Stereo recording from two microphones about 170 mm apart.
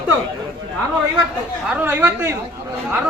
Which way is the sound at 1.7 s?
10° right (ahead or behind).